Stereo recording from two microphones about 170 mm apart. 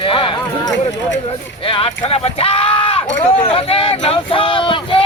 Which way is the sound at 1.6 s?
35° left (ahead or behind).